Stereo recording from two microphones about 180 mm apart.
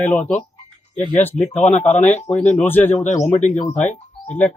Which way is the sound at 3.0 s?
40° left (ahead or behind).